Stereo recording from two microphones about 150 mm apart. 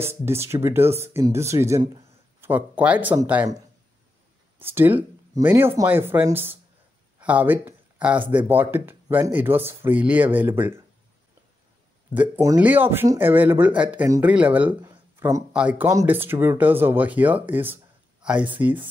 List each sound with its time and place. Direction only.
0.0 s speech: 15° right (ahead or behind)
4.7 s speech: 10° right (ahead or behind)
12.1 s speech: 10° right (ahead or behind)
14.9 s a sound: 20° right (ahead or behind)
15.5 s speech: 10° right (ahead or behind)